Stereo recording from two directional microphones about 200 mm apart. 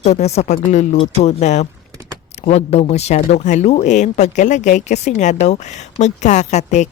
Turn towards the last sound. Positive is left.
turn(degrees=35)  # may be behind; listen again after turning